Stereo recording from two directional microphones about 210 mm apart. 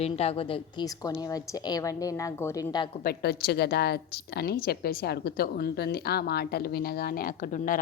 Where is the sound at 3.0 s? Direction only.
50° left (ahead or behind).